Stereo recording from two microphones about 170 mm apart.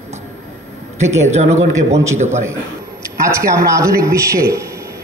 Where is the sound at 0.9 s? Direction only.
40° right (ahead or behind).